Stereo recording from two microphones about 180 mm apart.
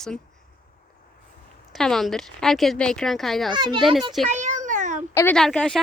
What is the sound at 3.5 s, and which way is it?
Speech, 25° right (ahead or behind).